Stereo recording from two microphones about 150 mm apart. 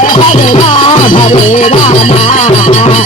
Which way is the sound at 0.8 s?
35° left (ahead or behind).